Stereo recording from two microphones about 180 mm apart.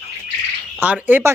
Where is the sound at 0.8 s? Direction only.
10° right (ahead or behind).